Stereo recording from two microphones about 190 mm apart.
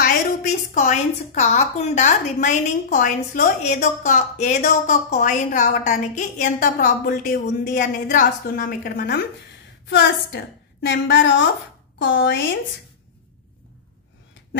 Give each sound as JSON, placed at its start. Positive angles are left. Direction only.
{"t": 0.0, "sound": "a woman's voice", "side_deg": 40}
{"t": 9.8, "sound": "a woman's voice", "side_deg": 70}